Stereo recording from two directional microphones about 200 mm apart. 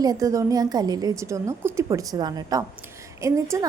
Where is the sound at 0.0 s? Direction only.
15° right (ahead or behind).